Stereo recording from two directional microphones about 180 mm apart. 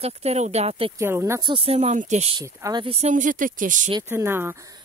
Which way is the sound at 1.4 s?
30° right (ahead or behind).